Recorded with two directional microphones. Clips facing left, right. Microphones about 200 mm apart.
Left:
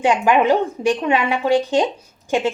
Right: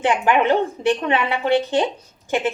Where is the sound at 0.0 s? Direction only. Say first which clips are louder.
Left 2 dB; 15° left (ahead or behind).